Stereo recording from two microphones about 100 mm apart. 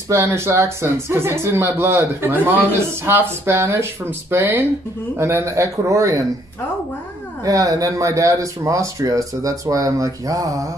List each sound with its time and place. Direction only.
0.1 s speech: 30° right (ahead or behind)
7.4 s speech: 35° right (ahead or behind)